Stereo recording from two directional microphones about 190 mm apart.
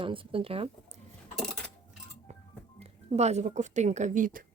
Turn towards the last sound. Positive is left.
turn(degrees=-45)  # may be behind; listen again after turning